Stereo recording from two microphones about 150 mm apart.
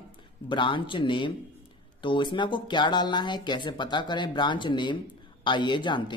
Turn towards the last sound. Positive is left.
turn(degrees=30)  # may be behind; listen again after turning